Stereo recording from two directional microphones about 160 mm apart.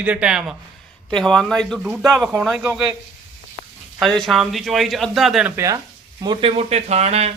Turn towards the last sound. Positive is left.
turn(degrees=-40)  # may be behind; listen again after turning